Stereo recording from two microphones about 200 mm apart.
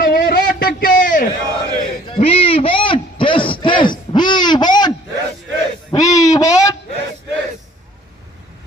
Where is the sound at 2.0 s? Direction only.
30° left (ahead or behind).